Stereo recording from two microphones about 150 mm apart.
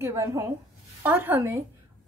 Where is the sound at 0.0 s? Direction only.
20° right (ahead or behind).